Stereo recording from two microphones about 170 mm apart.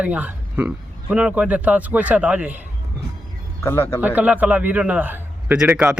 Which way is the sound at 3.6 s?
15° left (ahead or behind).